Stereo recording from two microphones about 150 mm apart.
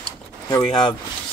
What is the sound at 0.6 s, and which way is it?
Speech, 30° left (ahead or behind).